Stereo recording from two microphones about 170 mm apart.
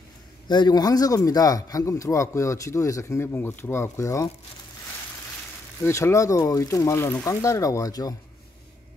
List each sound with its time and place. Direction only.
0.5 s a man's voice: 25° left (ahead or behind)
5.9 s a man's voice: 15° left (ahead or behind)